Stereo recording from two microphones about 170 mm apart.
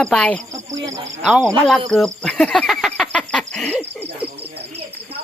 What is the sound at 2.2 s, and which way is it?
Owl, 5° left (ahead or behind).